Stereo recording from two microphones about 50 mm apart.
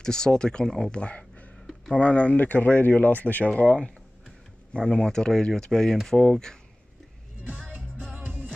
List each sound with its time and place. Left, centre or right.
0.0 s speech: centre
0.9 s speech: left
3.4 s speech: left
7.4 s music: right